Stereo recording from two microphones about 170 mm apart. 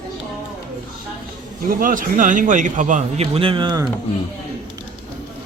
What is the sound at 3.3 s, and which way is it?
Speech, 30° right (ahead or behind).